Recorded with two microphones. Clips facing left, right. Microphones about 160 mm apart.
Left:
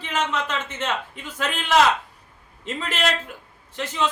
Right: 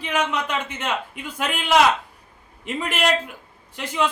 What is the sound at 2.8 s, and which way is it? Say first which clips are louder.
A man's voice: right 3 dB; 10° right (ahead or behind).